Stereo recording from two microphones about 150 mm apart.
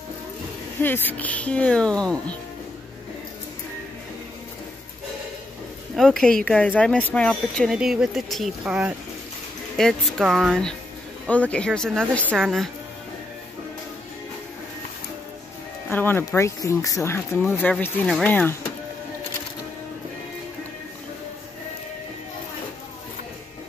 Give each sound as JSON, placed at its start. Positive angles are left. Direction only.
{"t": 0.7, "sound": "speech", "side_deg": 15}
{"t": 5.9, "sound": "speech", "side_deg": 5}
{"t": 7.7, "sound": "speech", "side_deg": -5}
{"t": 15.9, "sound": "speech", "side_deg": 15}